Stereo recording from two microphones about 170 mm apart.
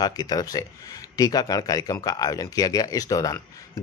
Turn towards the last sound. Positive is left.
turn(degrees=20)  # may be behind; listen again after turning